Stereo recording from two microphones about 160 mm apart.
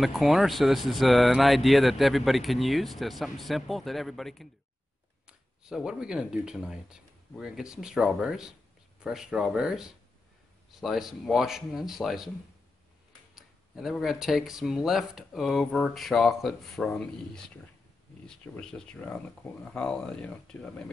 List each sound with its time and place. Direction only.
0.0 s speech: centre (ahead or behind)
13.3 s speech: centre (ahead or behind)